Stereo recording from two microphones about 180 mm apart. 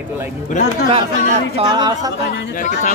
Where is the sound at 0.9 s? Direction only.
35° right (ahead or behind).